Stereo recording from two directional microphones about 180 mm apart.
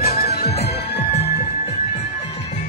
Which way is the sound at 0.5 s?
65° left (ahead or behind).